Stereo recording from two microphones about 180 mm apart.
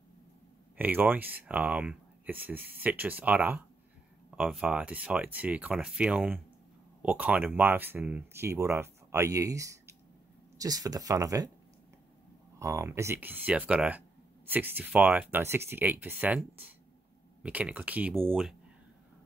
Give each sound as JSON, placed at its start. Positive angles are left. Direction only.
{"t": 0.7, "sound": "speech", "side_deg": -10}
{"t": 12.5, "sound": "speech", "side_deg": -15}